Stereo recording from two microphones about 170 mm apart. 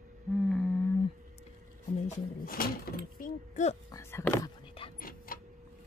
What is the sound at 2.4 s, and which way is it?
Speech, 60° left (ahead or behind).